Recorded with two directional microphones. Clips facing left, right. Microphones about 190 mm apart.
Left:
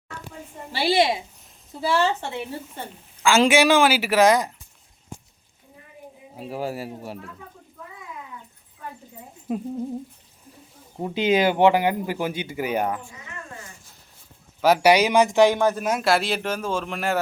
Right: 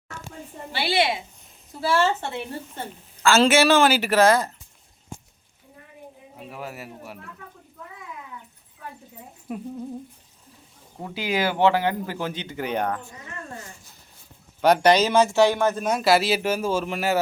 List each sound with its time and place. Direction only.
0.7 s speech: 35° left (ahead or behind)
1.8 s speech: 15° left (ahead or behind)
6.3 s speech: 30° left (ahead or behind)
11.0 s speech: 20° left (ahead or behind)
14.6 s speech: 5° left (ahead or behind)